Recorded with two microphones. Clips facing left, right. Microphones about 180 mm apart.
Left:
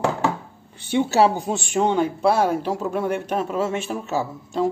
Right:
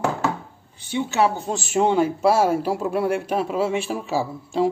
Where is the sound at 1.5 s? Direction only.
Centre (ahead or behind).